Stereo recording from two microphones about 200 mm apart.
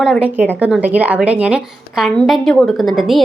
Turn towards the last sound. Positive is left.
turn(degrees=0)  # may be behind; listen again after turning